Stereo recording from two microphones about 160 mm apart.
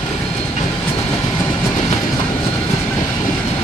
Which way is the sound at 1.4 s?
15° left (ahead or behind).